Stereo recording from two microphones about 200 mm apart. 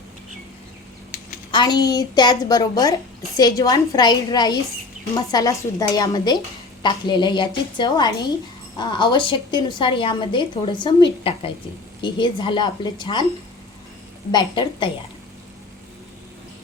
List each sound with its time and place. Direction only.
1.5 s a woman's voice: 20° left (ahead or behind)
14.3 s a woman's voice: 25° left (ahead or behind)